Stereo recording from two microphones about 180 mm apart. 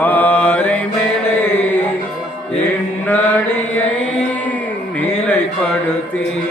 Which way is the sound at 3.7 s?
10° left (ahead or behind).